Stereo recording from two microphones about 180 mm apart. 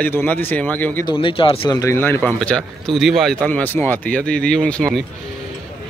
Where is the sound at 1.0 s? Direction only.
30° left (ahead or behind).